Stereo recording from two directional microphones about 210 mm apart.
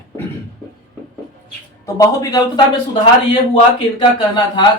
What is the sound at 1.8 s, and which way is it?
Speech, 15° left (ahead or behind).